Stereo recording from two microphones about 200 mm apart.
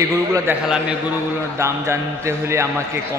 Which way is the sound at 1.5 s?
15° right (ahead or behind).